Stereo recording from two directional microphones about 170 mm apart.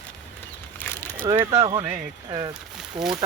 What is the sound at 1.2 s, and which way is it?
Speech, 20° right (ahead or behind).